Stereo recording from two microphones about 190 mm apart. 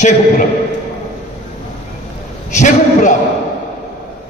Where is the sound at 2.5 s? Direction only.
40° left (ahead or behind).